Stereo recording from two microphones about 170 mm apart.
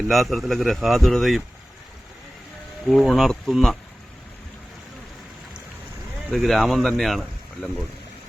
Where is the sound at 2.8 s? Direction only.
Centre (ahead or behind).